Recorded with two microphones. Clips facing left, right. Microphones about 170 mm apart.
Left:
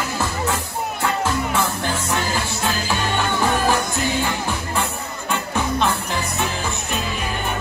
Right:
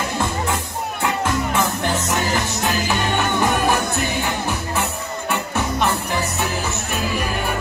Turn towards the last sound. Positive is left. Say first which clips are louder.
# even
turn(degrees=-15)  # may be behind; listen again after turning